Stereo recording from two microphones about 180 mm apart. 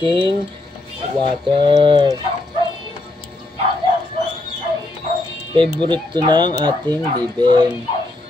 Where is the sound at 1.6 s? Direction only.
25° right (ahead or behind).